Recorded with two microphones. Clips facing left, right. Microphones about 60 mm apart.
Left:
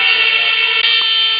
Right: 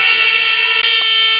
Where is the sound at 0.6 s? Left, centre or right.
Right.